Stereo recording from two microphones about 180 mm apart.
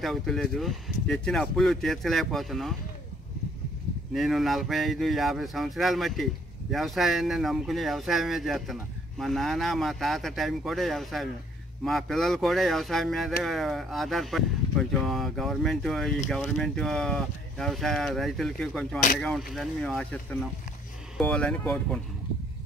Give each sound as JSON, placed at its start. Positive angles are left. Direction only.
{"t": 0.0, "sound": "speech", "side_deg": 0}
{"t": 4.1, "sound": "speech", "side_deg": 0}